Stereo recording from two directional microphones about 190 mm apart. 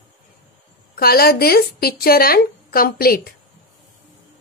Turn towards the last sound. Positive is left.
turn(degrees=50)  # may be behind; listen again after turning